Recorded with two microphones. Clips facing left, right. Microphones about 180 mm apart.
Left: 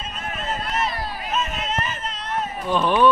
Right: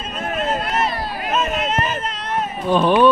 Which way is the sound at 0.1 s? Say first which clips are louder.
Right 8 dB; 80° right.